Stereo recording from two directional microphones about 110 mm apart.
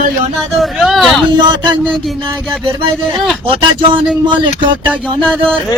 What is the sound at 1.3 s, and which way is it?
Speech, 45° right (ahead or behind).